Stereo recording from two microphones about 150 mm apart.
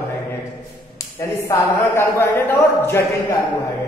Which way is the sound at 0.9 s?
20° left (ahead or behind).